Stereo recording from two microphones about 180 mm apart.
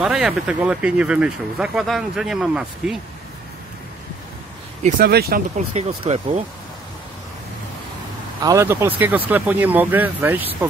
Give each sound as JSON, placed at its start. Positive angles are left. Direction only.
{"t": 0.0, "sound": "speech", "side_deg": -5}
{"t": 4.8, "sound": "speech", "side_deg": -55}
{"t": 5.8, "sound": "speech", "side_deg": -35}
{"t": 8.4, "sound": "speech", "side_deg": -15}